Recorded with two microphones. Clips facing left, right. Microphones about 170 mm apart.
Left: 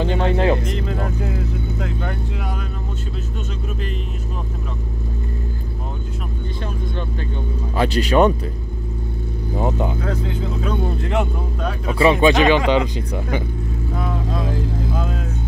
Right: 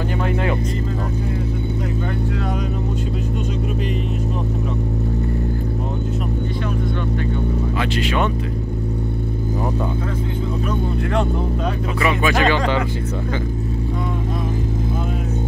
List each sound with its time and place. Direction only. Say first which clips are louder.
0.1 s music: left 3 dB; 30° left (ahead or behind)
7.8 s speech: left 8 dB; 40° left (ahead or behind)
12.0 s speech: left 5 dB; 30° left (ahead or behind)